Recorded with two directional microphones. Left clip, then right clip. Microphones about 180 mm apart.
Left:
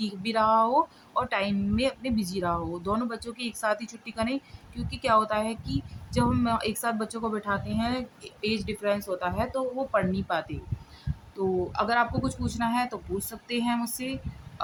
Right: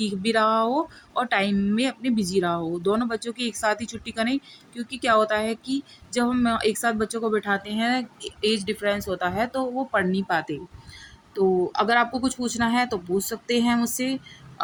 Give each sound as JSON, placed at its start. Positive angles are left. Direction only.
{"t": 0.0, "sound": "a woman's voice", "side_deg": -15}